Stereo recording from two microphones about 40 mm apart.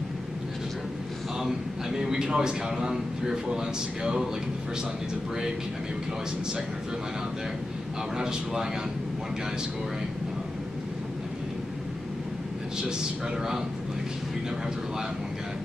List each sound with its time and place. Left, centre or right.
1.4 s a man's voice: centre
8.2 s a man's voice: centre